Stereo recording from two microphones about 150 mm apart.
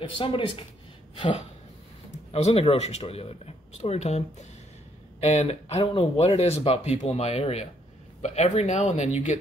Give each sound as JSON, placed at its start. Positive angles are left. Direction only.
{"t": 0.0, "sound": "speech", "side_deg": 35}
{"t": 2.3, "sound": "speech", "side_deg": 45}